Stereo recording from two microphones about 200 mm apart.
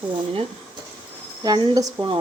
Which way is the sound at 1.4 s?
20° right (ahead or behind).